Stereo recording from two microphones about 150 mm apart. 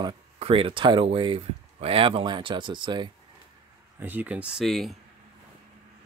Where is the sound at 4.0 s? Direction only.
10° right (ahead or behind).